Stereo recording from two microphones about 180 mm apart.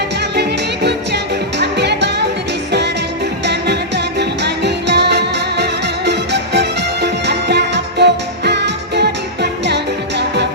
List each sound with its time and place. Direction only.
0.3 s music: 70° right (ahead or behind)
3.4 s music: 70° right (ahead or behind)